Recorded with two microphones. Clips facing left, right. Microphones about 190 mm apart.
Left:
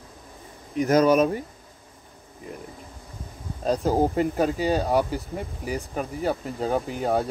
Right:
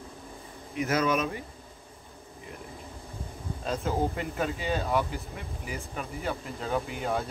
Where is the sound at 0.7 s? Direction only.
40° left (ahead or behind).